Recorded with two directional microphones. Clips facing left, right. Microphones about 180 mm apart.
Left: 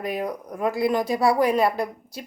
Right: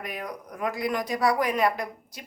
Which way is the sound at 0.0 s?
30° left (ahead or behind).